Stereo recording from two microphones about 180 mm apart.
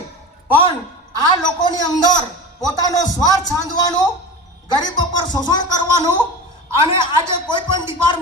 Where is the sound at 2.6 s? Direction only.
20° left (ahead or behind).